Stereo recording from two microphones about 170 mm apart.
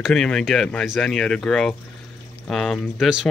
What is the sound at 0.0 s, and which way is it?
Speech, 5° left (ahead or behind).